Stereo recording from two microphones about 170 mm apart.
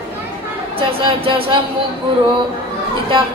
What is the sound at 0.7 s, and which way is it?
Speech, 30° right (ahead or behind).